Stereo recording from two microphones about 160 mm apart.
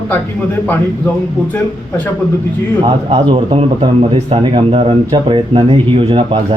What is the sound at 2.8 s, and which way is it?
Speech, 30° right (ahead or behind).